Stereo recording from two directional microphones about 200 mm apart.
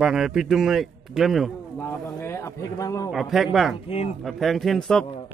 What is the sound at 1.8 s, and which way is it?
A man's voice, 10° left (ahead or behind).